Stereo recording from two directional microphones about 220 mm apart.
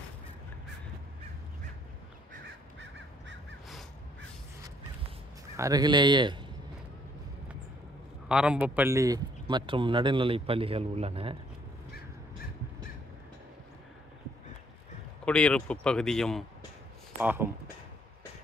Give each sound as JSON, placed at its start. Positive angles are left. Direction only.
{"t": 2.3, "sound": "crow", "side_deg": -50}
{"t": 5.6, "sound": "a man's voice", "side_deg": -15}
{"t": 8.3, "sound": "a man's voice", "side_deg": -5}
{"t": 15.2, "sound": "speech", "side_deg": 5}
{"t": 17.2, "sound": "speech", "side_deg": -10}